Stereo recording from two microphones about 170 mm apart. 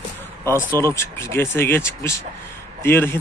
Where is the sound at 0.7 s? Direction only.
15° left (ahead or behind).